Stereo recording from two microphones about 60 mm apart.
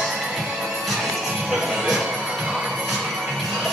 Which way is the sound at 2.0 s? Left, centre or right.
Centre.